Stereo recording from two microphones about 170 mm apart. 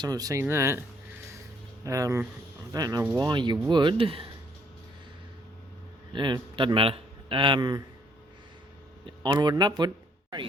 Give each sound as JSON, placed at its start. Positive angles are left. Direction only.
{"t": 0.0, "sound": "speech", "side_deg": -20}
{"t": 6.1, "sound": "a man's voice", "side_deg": -30}
{"t": 9.0, "sound": "speech", "side_deg": -25}